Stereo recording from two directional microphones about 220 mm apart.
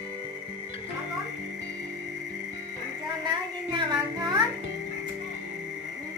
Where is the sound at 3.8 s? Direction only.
20° right (ahead or behind).